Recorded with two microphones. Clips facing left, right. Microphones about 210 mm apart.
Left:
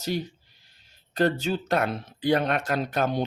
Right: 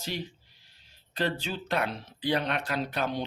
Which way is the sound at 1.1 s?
45° left (ahead or behind).